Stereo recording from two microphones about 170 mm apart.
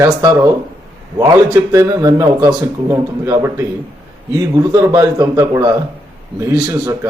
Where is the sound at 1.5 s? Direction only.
15° right (ahead or behind).